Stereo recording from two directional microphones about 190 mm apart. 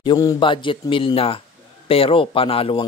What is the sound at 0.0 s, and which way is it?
Speech, 20° left (ahead or behind).